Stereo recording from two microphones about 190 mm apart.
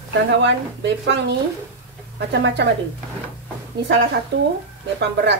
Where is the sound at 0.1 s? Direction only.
65° right (ahead or behind).